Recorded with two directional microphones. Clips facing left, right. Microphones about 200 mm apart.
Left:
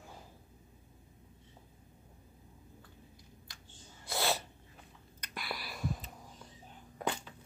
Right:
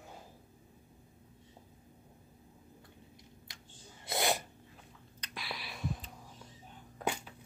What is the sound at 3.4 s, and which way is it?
Sneeze, 20° right (ahead or behind).